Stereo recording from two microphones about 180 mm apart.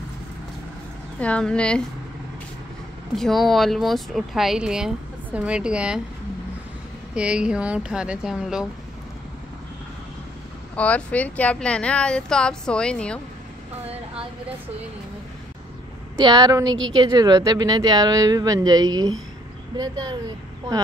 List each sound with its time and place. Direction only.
1.2 s speech: 5° left (ahead or behind)
3.2 s speech: centre (ahead or behind)
7.2 s speech: 5° right (ahead or behind)
10.8 s speech: 5° left (ahead or behind)
16.2 s a woman's voice: 25° right (ahead or behind)